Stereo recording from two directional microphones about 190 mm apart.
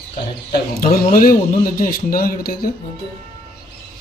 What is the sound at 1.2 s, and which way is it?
Speech, 45° left (ahead or behind).